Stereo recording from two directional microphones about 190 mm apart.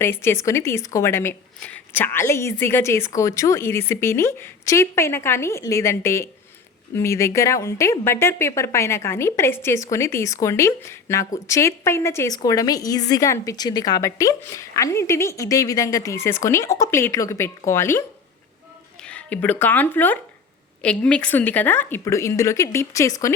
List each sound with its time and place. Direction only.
0.0 s a woman's voice: 10° left (ahead or behind)
19.0 s a woman's voice: 5° left (ahead or behind)